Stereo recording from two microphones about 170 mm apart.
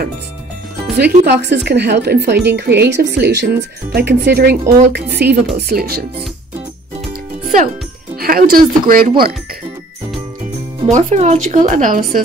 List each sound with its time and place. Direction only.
0.9 s speech: 75° right (ahead or behind)
8.2 s speech: 60° right (ahead or behind)
10.9 s speech: 45° right (ahead or behind)